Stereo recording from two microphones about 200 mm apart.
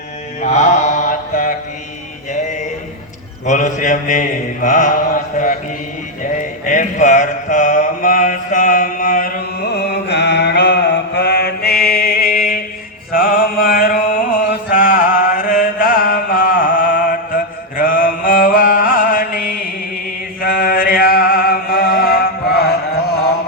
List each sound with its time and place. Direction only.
0.4 s mantra: 35° left (ahead or behind)
2.3 s music: 40° left (ahead or behind)
3.4 s mantra: 40° left (ahead or behind)
9.7 s mantra: 55° left (ahead or behind)
13.1 s music: 45° left (ahead or behind)
14.7 s chant: 40° left (ahead or behind)
20.4 s music: 45° left (ahead or behind)